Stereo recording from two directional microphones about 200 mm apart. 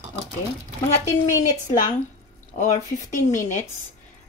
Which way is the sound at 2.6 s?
40° left (ahead or behind).